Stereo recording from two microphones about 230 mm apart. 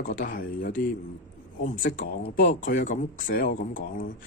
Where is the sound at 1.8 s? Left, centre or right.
Left.